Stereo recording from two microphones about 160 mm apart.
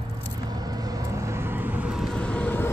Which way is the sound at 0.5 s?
25° right (ahead or behind).